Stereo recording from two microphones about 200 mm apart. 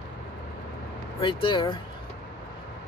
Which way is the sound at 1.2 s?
25° left (ahead or behind).